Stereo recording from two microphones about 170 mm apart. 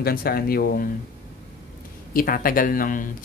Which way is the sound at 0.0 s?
65° left (ahead or behind).